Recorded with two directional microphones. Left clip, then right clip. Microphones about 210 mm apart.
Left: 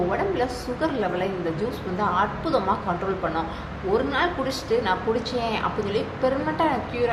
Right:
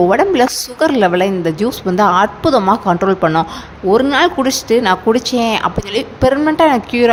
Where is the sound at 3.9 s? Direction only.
50° right (ahead or behind).